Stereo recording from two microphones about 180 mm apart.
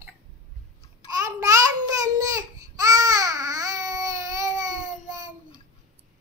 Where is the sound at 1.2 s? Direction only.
20° right (ahead or behind).